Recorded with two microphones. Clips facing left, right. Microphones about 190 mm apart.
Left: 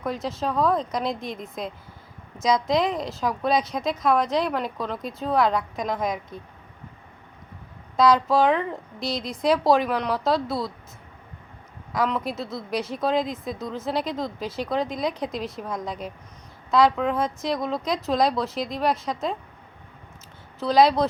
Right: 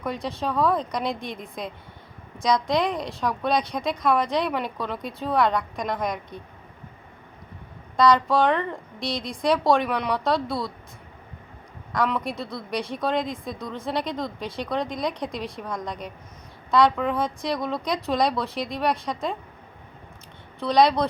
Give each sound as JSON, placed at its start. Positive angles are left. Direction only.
{"t": 0.0, "sound": "a woman's voice", "side_deg": 0}
{"t": 7.9, "sound": "a woman's voice", "side_deg": 5}
{"t": 11.9, "sound": "a woman's voice", "side_deg": 0}
{"t": 20.6, "sound": "a woman's voice", "side_deg": 0}